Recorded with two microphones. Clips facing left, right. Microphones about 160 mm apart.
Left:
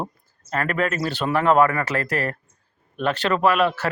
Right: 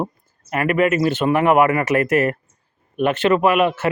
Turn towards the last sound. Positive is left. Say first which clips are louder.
# right 4 dB
turn(degrees=-5)  # may be behind; listen again after turning